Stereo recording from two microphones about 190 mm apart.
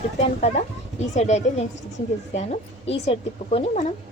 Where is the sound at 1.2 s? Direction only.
35° left (ahead or behind).